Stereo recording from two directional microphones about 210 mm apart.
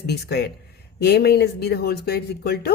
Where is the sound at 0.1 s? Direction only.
50° left (ahead or behind).